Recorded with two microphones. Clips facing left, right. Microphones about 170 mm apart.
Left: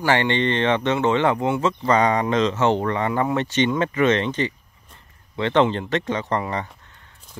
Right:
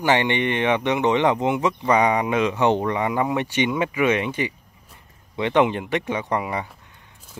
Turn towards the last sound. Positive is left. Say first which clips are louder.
# even
turn(degrees=-10)  # may be behind; listen again after turning